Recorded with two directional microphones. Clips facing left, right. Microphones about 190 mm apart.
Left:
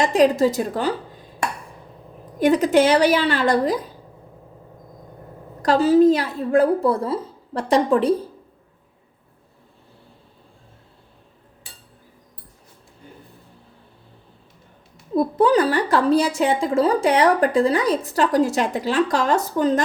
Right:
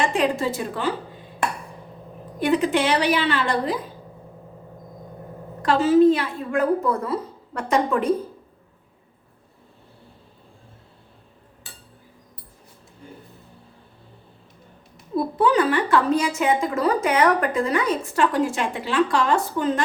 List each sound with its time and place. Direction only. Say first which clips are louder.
0.0 s a woman's voice: left 6 dB; 40° left (ahead or behind)
2.4 s a woman's voice: left 5 dB; 40° left (ahead or behind)
5.6 s a woman's voice: left 1 dB; 40° left (ahead or behind)
15.1 s a woman's voice: left 3 dB; 40° left (ahead or behind)